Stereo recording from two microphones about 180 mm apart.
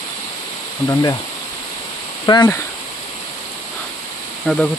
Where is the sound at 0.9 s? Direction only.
20° left (ahead or behind).